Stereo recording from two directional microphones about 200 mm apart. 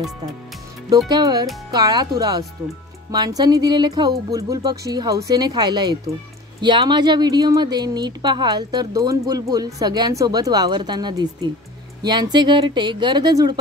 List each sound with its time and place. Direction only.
0.8 s speech: 20° right (ahead or behind)